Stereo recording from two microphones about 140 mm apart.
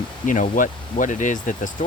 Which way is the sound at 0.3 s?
70° left (ahead or behind).